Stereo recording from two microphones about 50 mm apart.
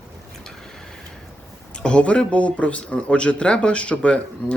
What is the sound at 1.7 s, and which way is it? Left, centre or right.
A man's voice, centre.